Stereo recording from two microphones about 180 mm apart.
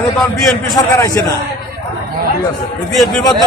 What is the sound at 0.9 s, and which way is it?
Speech, 20° left (ahead or behind).